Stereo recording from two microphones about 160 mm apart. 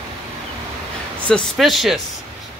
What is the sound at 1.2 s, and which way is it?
Speech, 5° left (ahead or behind).